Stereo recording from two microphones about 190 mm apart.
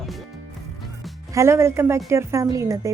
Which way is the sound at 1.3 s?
15° right (ahead or behind).